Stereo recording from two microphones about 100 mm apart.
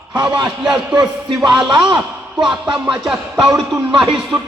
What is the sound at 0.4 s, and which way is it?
Music, 5° right (ahead or behind).